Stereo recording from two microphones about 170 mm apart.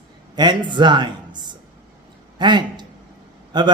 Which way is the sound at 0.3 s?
25° right (ahead or behind).